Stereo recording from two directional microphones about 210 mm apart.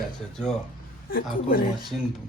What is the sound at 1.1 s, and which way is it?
Speech, 45° left (ahead or behind).